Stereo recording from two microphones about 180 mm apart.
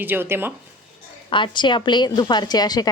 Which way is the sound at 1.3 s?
25° left (ahead or behind).